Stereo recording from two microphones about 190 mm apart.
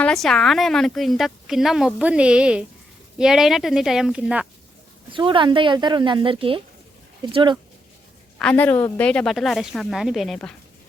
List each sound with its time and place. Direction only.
0.0 s a woman's voice: centre (ahead or behind)
5.1 s speech: 25° right (ahead or behind)
8.4 s a woman's voice: 5° left (ahead or behind)